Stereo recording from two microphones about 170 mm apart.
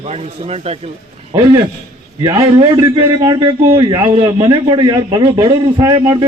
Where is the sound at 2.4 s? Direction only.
30° right (ahead or behind).